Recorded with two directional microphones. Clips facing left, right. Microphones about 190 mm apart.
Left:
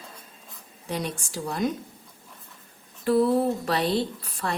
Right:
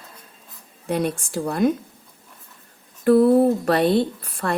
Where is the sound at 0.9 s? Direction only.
55° right (ahead or behind).